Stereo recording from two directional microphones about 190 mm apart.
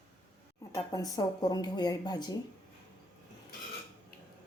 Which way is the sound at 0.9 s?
20° left (ahead or behind).